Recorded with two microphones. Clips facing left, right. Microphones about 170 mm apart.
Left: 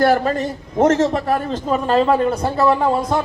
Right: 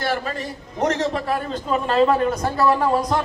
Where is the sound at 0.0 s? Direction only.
45° left (ahead or behind).